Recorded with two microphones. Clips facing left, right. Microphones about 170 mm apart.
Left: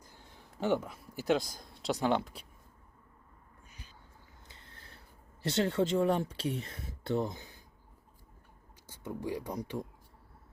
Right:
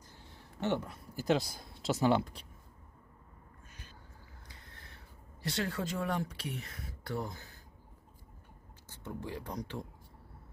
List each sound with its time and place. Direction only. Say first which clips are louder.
0.6 s speech: left 3 dB; 10° left (ahead or behind)
4.4 s mechanisms: even; 30° left (ahead or behind)
5.5 s speech: left 7 dB; 25° left (ahead or behind)
8.9 s speech: left 4 dB; 10° left (ahead or behind)